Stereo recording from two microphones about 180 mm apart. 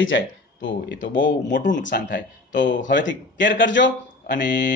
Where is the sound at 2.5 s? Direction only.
90° left.